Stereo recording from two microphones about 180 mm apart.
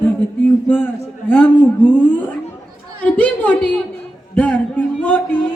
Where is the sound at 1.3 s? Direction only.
10° left (ahead or behind).